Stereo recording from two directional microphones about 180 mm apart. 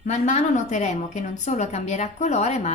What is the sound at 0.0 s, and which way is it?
A woman's voice, 40° left (ahead or behind).